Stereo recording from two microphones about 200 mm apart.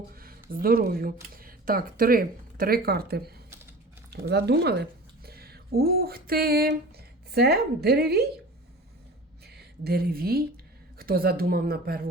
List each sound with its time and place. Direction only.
0.1 s a sound: 45° right (ahead or behind)
0.5 s speech: 45° right (ahead or behind)
9.4 s speech: 55° right (ahead or behind)